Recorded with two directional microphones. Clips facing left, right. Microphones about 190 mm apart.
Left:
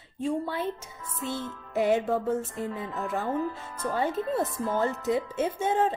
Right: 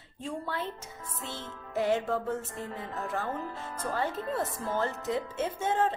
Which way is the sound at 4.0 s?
15° left (ahead or behind).